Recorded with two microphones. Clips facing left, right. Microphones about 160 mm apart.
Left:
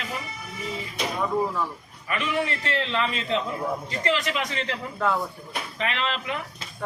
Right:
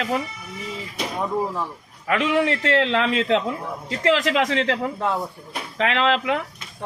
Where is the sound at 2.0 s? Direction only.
90° right.